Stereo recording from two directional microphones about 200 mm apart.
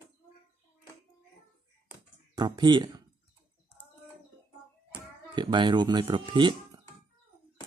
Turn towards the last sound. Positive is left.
turn(degrees=-25)  # may be behind; listen again after turning